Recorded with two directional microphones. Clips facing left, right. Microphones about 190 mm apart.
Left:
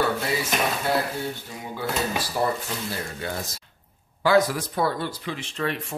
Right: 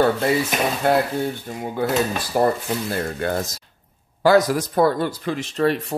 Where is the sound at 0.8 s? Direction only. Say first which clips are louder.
Right 6 dB; 55° right (ahead or behind).